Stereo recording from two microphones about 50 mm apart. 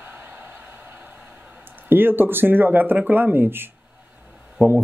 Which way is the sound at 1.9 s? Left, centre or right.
Right.